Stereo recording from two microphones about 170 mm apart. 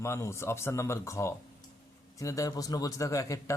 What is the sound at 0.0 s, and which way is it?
Speech, 15° left (ahead or behind).